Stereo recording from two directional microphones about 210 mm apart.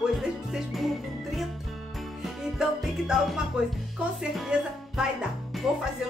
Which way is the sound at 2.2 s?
Centre (ahead or behind).